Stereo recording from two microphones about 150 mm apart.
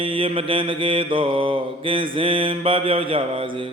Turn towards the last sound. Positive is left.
turn(degrees=-35)  # may be behind; listen again after turning